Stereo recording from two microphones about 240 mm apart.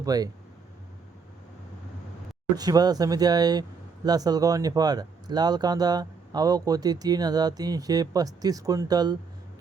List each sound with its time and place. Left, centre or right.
0.0 s speech: centre
2.6 s speech: centre